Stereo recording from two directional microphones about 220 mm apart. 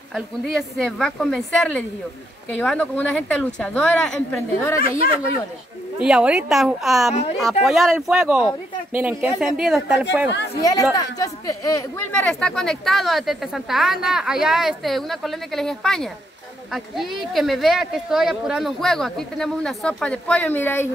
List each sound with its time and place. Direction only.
0.1 s speech: centre (ahead or behind)
4.8 s speech: 40° left (ahead or behind)
5.9 s speech: 5° right (ahead or behind)
10.6 s speech: 15° left (ahead or behind)